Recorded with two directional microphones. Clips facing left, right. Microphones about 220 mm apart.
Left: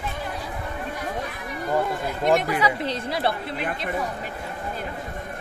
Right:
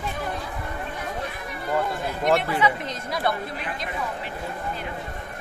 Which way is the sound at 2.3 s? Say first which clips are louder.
Left 1 dB; 15° left (ahead or behind).